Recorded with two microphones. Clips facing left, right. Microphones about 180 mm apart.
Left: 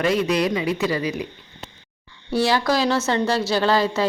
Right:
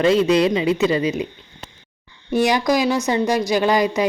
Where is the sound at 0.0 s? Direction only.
25° right (ahead or behind).